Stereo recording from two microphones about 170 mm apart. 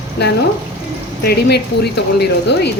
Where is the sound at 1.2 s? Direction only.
70° left (ahead or behind).